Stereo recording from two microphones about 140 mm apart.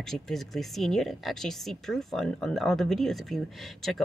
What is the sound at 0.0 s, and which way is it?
Speech, 5° left (ahead or behind).